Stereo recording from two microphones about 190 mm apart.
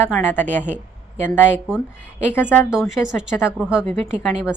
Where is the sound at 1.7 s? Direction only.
5° right (ahead or behind).